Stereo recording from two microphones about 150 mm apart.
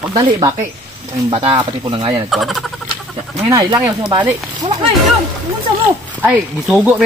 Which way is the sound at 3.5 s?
20° right (ahead or behind).